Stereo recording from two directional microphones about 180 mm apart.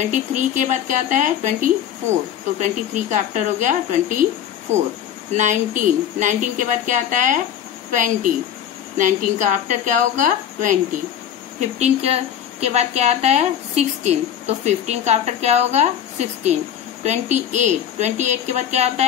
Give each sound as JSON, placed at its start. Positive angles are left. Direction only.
{"t": 0.0, "sound": "speech", "side_deg": -40}
{"t": 5.3, "sound": "speech", "side_deg": -45}
{"t": 11.8, "sound": "a woman's voice", "side_deg": -35}